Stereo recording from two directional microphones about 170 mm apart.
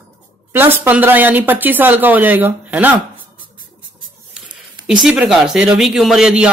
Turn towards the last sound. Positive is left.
turn(degrees=-5)  # may be behind; listen again after turning